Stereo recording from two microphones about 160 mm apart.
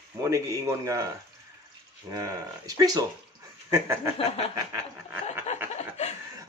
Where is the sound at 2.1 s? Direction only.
25° right (ahead or behind).